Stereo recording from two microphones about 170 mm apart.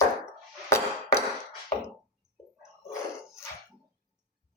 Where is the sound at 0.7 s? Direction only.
15° left (ahead or behind).